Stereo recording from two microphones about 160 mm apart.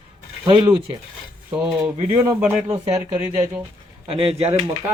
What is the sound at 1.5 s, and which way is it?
Speech, 10° right (ahead or behind).